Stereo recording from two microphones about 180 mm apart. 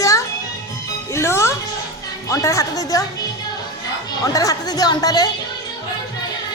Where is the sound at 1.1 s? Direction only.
15° left (ahead or behind).